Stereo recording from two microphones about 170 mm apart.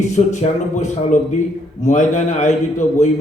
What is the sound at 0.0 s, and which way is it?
A man's voice, 45° left (ahead or behind).